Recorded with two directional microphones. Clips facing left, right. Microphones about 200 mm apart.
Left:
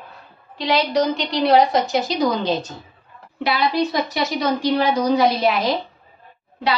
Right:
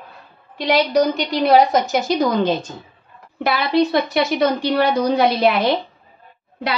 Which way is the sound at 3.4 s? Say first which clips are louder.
Right 3 dB; 60° right (ahead or behind).